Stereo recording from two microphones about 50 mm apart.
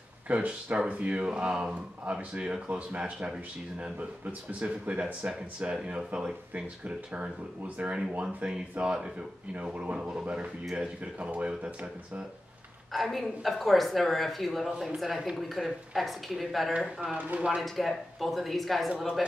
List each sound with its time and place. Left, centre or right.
0.3 s speech: right
4.2 s speech: right; by 12.3 s centre
12.9 s speech: centre
17.2 s speech: right
17.6 s speech: centre